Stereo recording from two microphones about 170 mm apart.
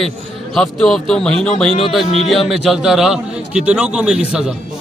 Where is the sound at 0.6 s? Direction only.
Centre (ahead or behind).